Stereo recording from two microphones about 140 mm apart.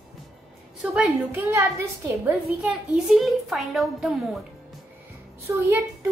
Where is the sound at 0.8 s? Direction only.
5° right (ahead or behind).